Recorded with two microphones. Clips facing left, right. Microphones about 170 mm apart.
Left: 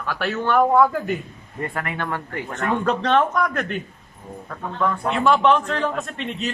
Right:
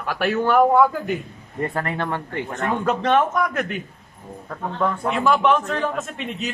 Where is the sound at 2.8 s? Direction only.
10° right (ahead or behind).